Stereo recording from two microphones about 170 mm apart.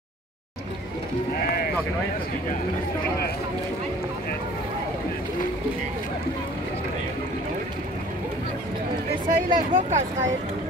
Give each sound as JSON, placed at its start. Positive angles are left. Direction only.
{"t": 9.3, "sound": "speech", "side_deg": -45}